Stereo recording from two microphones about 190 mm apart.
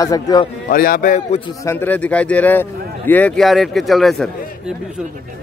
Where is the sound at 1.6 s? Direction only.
10° left (ahead or behind).